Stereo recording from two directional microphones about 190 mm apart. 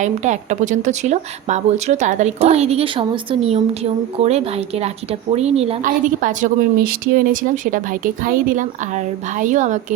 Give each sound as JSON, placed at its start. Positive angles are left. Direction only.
{"t": 0.0, "sound": "a woman's voice", "side_deg": -40}